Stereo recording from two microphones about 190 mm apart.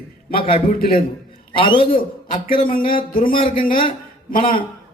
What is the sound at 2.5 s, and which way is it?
A man's voice, 45° left (ahead or behind).